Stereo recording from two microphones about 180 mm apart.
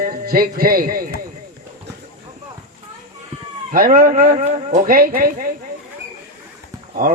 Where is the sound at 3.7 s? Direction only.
50° right (ahead or behind).